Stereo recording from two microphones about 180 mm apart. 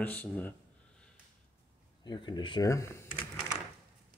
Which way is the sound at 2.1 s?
25° left (ahead or behind).